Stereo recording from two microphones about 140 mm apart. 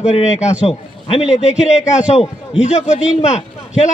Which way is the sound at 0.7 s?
45° left (ahead or behind).